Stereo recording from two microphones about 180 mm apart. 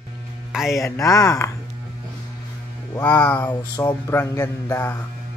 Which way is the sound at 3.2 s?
10° left (ahead or behind).